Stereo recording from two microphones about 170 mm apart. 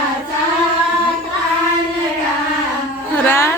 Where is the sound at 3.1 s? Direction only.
15° left (ahead or behind).